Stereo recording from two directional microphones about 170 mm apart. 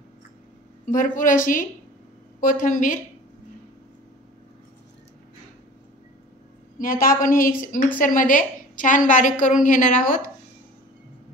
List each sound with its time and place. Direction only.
0.8 s a woman's voice: 50° left (ahead or behind)
6.8 s a woman's voice: 55° left (ahead or behind)